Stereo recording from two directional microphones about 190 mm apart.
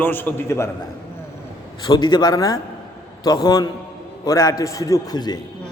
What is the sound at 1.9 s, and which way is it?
A man's voice, 25° left (ahead or behind).